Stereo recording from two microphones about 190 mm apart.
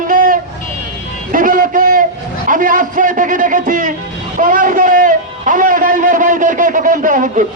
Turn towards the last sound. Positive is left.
turn(degrees=-45)  # may be behind; listen again after turning